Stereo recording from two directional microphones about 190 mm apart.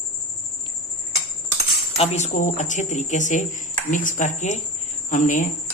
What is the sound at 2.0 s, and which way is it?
Speech, 35° left (ahead or behind).